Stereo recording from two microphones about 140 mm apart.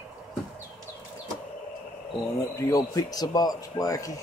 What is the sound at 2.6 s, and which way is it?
A man's voice, 25° left (ahead or behind).